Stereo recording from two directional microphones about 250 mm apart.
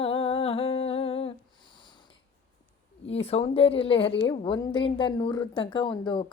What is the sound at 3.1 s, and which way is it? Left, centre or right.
Speech, left.